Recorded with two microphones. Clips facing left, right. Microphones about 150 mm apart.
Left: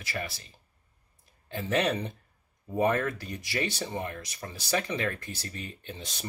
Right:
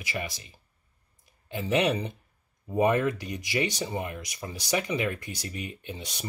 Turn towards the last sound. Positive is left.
turn(degrees=-15)  # may be behind; listen again after turning